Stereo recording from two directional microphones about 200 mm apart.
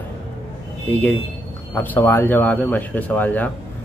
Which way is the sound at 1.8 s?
10° left (ahead or behind).